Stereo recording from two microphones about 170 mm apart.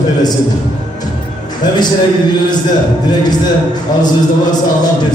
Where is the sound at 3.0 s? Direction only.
25° left (ahead or behind).